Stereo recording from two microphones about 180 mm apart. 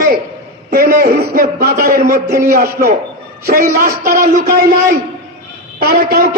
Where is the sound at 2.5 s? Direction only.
60° right (ahead or behind).